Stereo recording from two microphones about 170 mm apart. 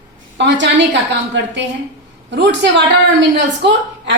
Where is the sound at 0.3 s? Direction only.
90° right.